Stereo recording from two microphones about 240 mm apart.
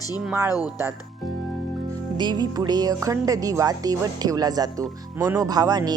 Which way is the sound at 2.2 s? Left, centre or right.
Centre.